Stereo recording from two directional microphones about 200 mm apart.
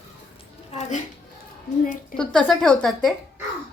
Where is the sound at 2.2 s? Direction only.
5° left (ahead or behind).